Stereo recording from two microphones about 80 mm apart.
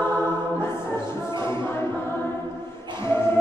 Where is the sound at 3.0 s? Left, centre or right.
Left.